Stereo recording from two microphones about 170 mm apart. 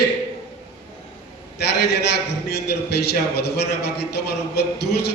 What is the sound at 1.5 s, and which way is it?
A man's voice, 75° left (ahead or behind).